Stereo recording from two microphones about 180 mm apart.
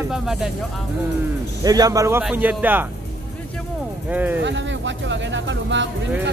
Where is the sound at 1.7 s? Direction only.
20° right (ahead or behind).